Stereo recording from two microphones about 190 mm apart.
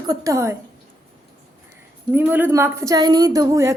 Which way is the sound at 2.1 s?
10° right (ahead or behind).